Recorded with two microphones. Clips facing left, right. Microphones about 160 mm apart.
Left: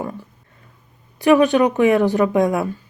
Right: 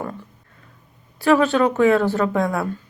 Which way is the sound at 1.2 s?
15° left (ahead or behind).